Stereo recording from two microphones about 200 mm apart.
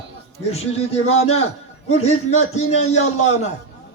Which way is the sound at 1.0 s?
30° left (ahead or behind).